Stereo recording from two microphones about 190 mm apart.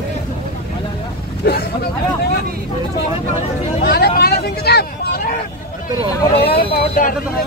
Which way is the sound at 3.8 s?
55° left (ahead or behind).